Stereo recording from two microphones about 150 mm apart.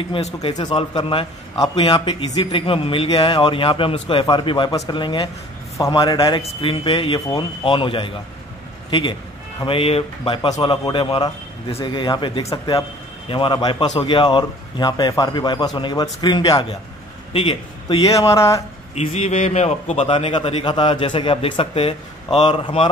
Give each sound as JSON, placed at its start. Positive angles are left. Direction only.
{"t": 0.1, "sound": "a man's voice", "side_deg": 40}
{"t": 9.7, "sound": "a man's voice", "side_deg": 40}
{"t": 18.9, "sound": "a man's voice", "side_deg": 45}